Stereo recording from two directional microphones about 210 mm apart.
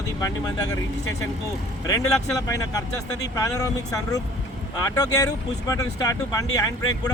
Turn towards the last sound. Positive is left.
turn(degrees=15)  # may be behind; listen again after turning